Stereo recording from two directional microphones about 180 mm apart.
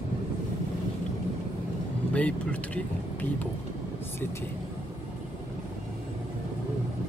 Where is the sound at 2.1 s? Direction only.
5° left (ahead or behind).